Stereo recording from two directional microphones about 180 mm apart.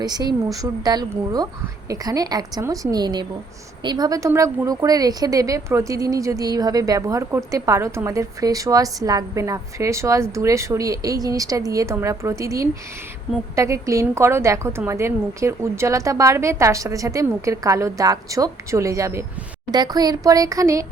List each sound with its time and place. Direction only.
0.0 s a woman's voice: 20° right (ahead or behind)